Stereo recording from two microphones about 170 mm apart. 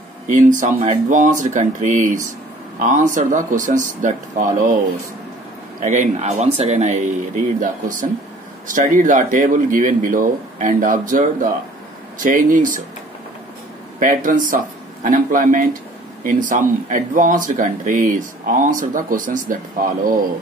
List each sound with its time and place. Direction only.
0.3 s speech: 50° right (ahead or behind)
5.8 s speech: 45° right (ahead or behind)
13.9 s speech: 50° right (ahead or behind)